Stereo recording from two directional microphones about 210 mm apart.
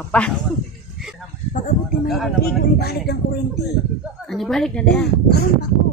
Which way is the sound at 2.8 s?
50° left (ahead or behind).